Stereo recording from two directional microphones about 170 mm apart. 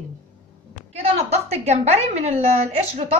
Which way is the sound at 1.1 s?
40° right (ahead or behind).